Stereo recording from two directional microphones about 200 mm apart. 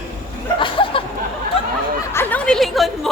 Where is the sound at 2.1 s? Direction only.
10° left (ahead or behind).